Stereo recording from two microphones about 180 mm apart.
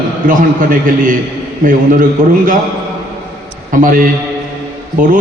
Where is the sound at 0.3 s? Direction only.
50° right (ahead or behind).